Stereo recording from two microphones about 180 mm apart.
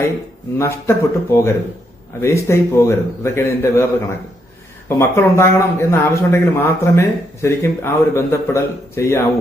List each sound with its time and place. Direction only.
0.6 s a man's voice: 15° left (ahead or behind)
4.9 s a man's voice: 15° left (ahead or behind)